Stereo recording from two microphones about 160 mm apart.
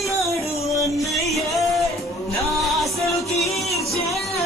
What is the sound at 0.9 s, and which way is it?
Music, centre (ahead or behind).